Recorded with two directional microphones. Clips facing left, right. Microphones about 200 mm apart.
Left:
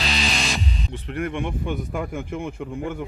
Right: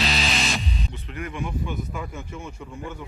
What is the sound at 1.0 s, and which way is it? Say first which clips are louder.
Speech: left 7 dB; 55° left (ahead or behind).